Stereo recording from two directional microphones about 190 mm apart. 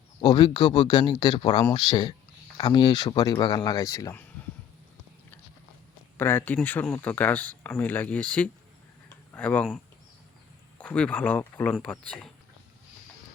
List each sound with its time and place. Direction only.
0.2 s speech: 25° left (ahead or behind)
6.1 s speech: 10° left (ahead or behind)